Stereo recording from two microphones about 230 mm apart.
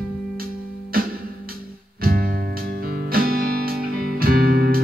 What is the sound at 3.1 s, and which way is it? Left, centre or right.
Music, right.